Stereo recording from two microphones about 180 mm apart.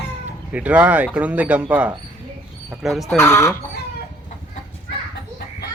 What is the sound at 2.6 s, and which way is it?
Speech, centre (ahead or behind).